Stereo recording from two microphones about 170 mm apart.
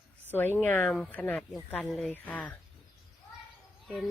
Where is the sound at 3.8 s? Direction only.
Centre (ahead or behind).